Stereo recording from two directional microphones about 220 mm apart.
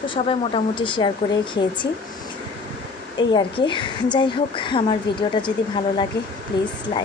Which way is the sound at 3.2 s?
20° left (ahead or behind).